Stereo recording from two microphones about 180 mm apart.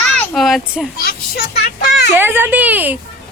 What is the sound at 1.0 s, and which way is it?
Speech, 60° left (ahead or behind).